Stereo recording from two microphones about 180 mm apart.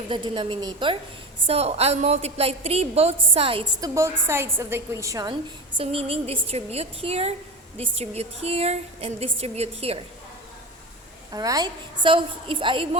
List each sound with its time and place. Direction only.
0.1 s a woman's voice: 25° right (ahead or behind)
3.8 s a woman's voice: 15° right (ahead or behind)
5.7 s a woman's voice: 30° right (ahead or behind)
11.3 s a woman's voice: 20° right (ahead or behind)